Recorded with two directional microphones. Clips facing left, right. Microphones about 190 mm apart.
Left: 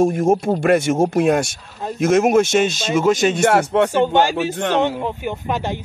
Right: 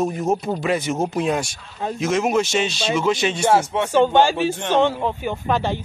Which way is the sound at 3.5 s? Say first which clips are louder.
Left 3 dB; 60° left (ahead or behind).